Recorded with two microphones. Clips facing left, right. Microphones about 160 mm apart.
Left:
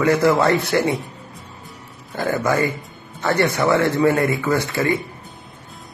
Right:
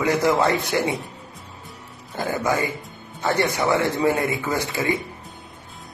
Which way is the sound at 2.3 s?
15° right (ahead or behind).